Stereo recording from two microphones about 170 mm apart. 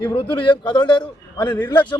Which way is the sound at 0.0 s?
30° left (ahead or behind).